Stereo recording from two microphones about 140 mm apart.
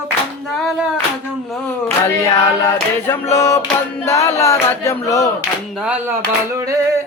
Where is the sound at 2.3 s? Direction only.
15° left (ahead or behind).